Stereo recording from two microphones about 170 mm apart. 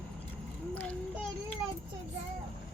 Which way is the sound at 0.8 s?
5° left (ahead or behind).